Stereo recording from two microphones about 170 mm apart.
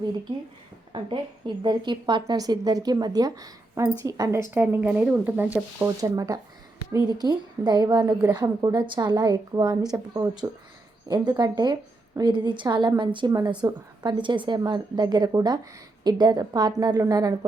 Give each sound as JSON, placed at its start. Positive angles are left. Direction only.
{"t": 0.9, "sound": "a woman's voice", "side_deg": -30}